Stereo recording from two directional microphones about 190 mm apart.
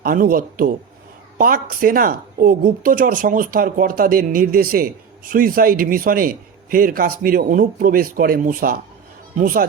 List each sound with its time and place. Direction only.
0.0 s a woman's voice: 50° right (ahead or behind)